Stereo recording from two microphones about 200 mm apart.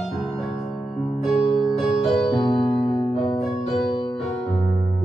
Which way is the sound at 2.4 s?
25° left (ahead or behind).